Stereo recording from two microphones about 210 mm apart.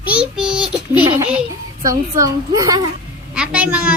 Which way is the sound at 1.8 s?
15° right (ahead or behind).